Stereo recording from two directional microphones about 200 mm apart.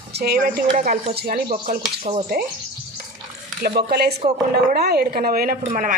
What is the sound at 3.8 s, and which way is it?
Speech, 55° right (ahead or behind).